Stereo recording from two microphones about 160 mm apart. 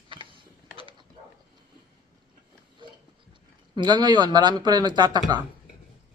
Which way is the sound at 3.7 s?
25° right (ahead or behind).